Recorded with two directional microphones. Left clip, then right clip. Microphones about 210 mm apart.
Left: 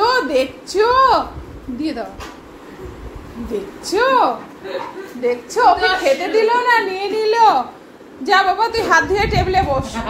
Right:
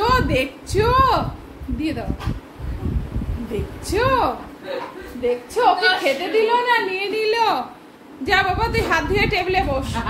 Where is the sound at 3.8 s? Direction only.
5° left (ahead or behind).